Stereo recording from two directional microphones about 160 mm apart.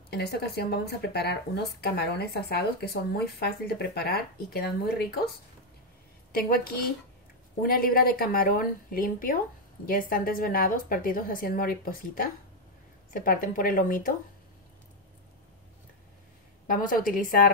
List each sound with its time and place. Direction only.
0.1 s speech: 80° left
6.3 s a woman's voice: 70° left (ahead or behind)
16.7 s a woman's voice: 60° left (ahead or behind)